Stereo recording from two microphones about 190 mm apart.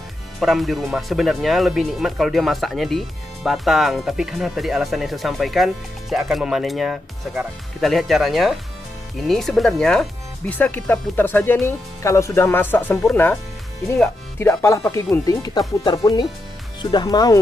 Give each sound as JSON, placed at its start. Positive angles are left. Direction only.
{"t": 0.4, "sound": "speech", "side_deg": 0}